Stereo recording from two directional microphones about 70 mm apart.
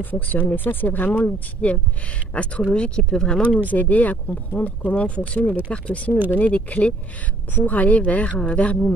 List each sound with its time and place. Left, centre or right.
0.0 s speech: left; by 3.4 s centre
3.5 s speech: left